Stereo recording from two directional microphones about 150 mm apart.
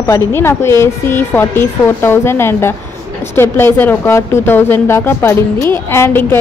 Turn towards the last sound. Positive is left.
turn(degrees=15)  # may be behind; listen again after turning